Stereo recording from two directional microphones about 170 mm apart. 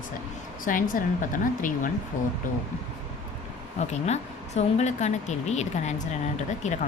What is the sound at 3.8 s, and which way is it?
Speech, 40° left (ahead or behind).